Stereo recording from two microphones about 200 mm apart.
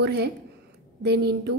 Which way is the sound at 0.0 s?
55° right (ahead or behind).